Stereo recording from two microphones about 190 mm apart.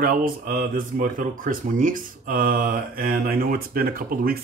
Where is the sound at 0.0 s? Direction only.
50° right (ahead or behind).